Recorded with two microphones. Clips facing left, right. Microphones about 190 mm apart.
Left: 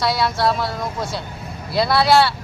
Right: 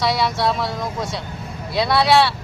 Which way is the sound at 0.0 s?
Centre (ahead or behind).